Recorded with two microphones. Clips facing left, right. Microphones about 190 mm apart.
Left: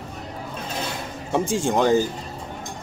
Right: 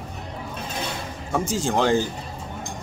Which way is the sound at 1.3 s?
25° left (ahead or behind).